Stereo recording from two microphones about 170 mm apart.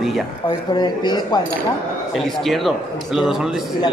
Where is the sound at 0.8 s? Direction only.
25° left (ahead or behind).